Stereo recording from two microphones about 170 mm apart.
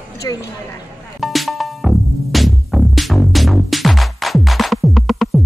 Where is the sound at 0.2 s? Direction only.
20° left (ahead or behind).